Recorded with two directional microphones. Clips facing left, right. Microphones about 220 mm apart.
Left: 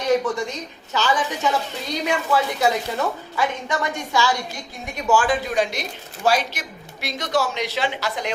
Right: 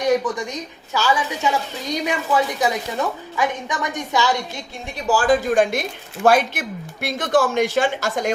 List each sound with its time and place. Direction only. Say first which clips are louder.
0.3 s a woman's voice: even; 15° right (ahead or behind)
4.9 s a woman's voice: right 2 dB; 35° right (ahead or behind)